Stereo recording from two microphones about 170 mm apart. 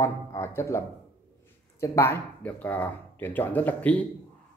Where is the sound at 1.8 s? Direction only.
15° left (ahead or behind).